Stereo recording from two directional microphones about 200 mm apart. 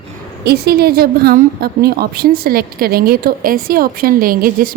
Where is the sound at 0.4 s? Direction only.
55° right (ahead or behind).